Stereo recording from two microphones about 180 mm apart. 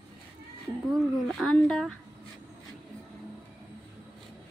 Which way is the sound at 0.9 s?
Centre (ahead or behind).